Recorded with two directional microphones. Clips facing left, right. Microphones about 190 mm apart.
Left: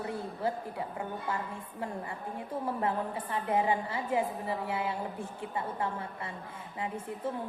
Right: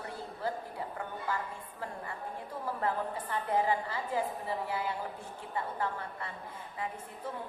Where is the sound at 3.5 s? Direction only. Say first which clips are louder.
Left 1 dB; 25° left (ahead or behind).